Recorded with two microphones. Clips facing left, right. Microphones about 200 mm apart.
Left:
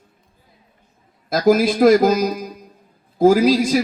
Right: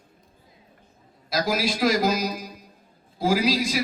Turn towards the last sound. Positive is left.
turn(degrees=50)  # may be behind; listen again after turning